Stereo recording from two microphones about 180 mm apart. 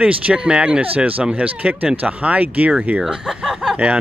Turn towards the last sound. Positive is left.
turn(degrees=-5)  # may be behind; listen again after turning